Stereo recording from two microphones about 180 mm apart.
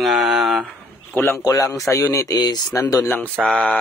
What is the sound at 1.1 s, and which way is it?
Speech, 10° left (ahead or behind).